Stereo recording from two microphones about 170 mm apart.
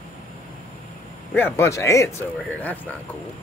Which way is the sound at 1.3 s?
15° left (ahead or behind).